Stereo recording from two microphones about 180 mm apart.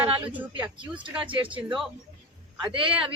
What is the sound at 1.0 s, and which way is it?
Speech, 30° right (ahead or behind).